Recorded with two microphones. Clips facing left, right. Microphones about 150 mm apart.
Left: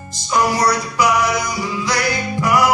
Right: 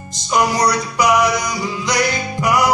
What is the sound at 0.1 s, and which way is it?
Music, 20° right (ahead or behind).